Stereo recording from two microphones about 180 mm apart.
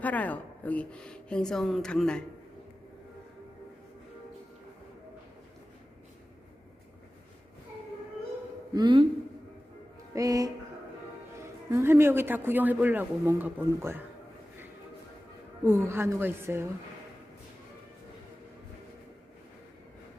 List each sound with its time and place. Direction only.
0.0 s speech: 10° left (ahead or behind)
8.7 s speech: 25° right (ahead or behind)
10.2 s a man's voice: 20° right (ahead or behind)
15.6 s a man's voice: 15° right (ahead or behind)